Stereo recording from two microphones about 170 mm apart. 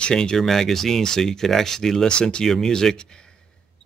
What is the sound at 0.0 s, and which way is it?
Speech, 5° left (ahead or behind).